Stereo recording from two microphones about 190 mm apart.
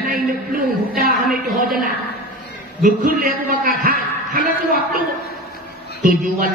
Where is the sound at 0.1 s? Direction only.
50° right (ahead or behind).